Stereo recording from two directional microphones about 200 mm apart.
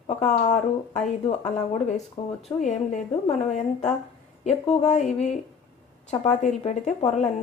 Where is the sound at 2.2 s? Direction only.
25° left (ahead or behind).